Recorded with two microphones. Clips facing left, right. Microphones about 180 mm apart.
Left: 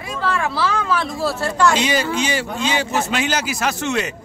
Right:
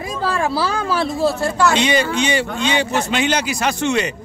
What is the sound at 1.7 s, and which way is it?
A man's voice, 5° left (ahead or behind).